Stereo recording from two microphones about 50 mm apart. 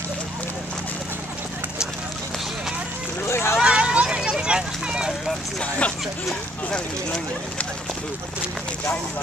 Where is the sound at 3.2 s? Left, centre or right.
Left.